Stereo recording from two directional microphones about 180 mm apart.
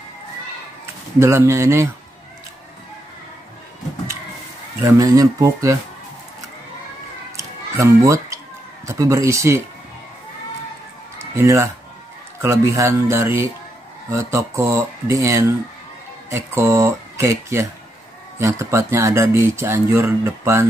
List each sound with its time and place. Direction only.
1.2 s speech: 15° right (ahead or behind)
4.8 s speech: 20° right (ahead or behind)
7.3 s a sound: 15° right (ahead or behind)
8.8 s speech: 15° right (ahead or behind)
11.1 s speech: 15° right (ahead or behind)